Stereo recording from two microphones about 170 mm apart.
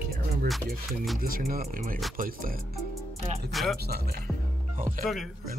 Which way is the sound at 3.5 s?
Centre (ahead or behind).